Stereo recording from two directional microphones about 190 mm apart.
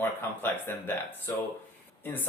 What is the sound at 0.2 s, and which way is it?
Speech, 10° left (ahead or behind).